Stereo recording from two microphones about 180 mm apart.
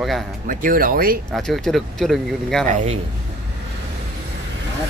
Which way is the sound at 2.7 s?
40° right (ahead or behind).